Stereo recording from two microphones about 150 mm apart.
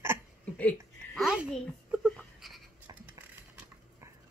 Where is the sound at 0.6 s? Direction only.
10° left (ahead or behind).